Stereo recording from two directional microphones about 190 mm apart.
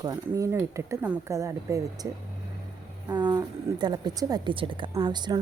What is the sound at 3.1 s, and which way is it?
A woman's voice, 20° right (ahead or behind).